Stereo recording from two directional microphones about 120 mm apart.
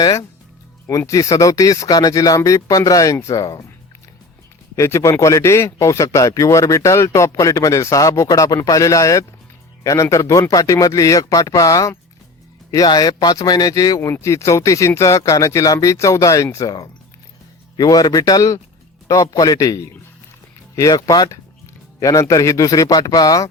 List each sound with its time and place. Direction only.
0.0 s speech: 30° left (ahead or behind)
4.8 s speech: 25° left (ahead or behind)